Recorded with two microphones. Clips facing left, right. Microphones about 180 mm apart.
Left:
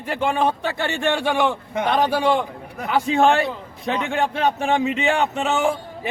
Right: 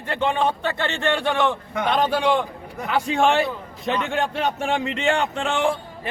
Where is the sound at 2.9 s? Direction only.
Centre (ahead or behind).